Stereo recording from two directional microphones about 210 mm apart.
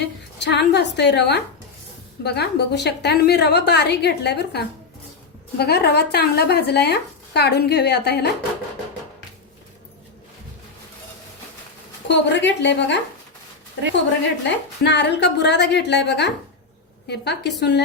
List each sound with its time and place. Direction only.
0.0 s speech: 55° left (ahead or behind)
12.0 s a woman's voice: 60° left (ahead or behind)
14.4 s a woman's voice: 55° left (ahead or behind)